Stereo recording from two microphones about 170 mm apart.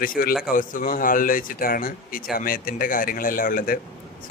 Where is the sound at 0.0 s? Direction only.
55° left (ahead or behind).